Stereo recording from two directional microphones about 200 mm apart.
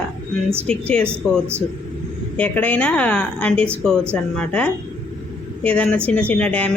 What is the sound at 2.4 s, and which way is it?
Speech, 5° left (ahead or behind).